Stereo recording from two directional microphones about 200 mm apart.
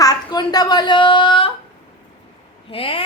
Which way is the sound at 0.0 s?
20° left (ahead or behind).